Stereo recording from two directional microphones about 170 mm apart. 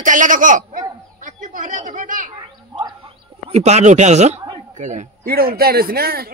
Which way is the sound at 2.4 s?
25° right (ahead or behind).